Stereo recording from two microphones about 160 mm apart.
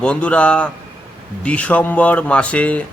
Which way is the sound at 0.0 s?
5° left (ahead or behind).